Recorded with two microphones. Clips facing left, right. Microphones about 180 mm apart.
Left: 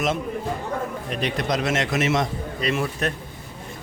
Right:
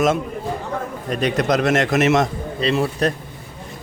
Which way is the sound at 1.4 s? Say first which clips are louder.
Right 6 dB; 65° right (ahead or behind).